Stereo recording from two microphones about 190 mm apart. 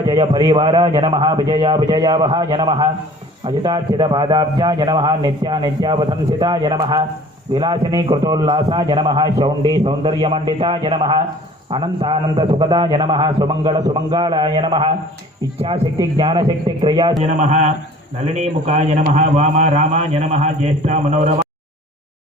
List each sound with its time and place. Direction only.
0.2 s a man's voice: 25° right (ahead or behind)
16.0 s a man's voice: 25° right (ahead or behind)
17.2 s a man's voice: 40° right (ahead or behind)